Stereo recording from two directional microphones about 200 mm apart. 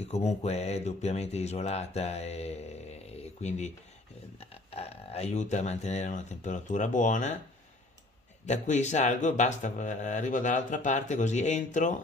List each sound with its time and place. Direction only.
0.0 s speech: 35° left (ahead or behind)
8.5 s speech: 35° left (ahead or behind)